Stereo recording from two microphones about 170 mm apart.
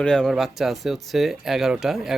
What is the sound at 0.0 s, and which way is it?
Speech, 5° left (ahead or behind).